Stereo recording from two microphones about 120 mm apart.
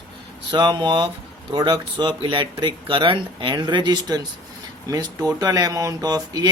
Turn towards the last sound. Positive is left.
turn(degrees=-35)  # may be behind; listen again after turning